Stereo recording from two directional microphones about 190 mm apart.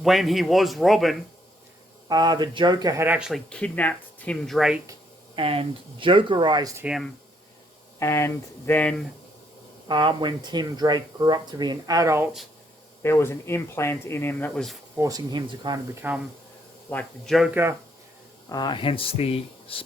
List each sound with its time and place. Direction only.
0.0 s speech: centre (ahead or behind)
2.0 s speech: 20° right (ahead or behind)
3.1 s speech: 5° right (ahead or behind)
5.3 s speech: 30° right (ahead or behind)
6.8 s speech: centre (ahead or behind)
7.9 s speech: 15° left (ahead or behind)
9.9 s speech: 25° right (ahead or behind)
13.0 s speech: 15° left (ahead or behind)
14.9 s speech: 20° right (ahead or behind)
16.0 s speech: 10° right (ahead or behind)
16.9 s speech: 5° left (ahead or behind)
18.4 s speech: 20° left (ahead or behind)